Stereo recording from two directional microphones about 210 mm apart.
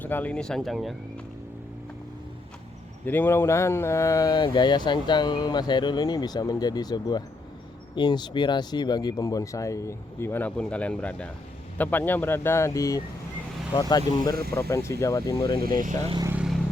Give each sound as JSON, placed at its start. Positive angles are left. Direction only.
{"t": 0.0, "sound": "speech", "side_deg": 10}
{"t": 3.1, "sound": "speech", "side_deg": 10}
{"t": 16.0, "sound": "speech", "side_deg": -20}
{"t": 16.3, "sound": "vehicle", "side_deg": -5}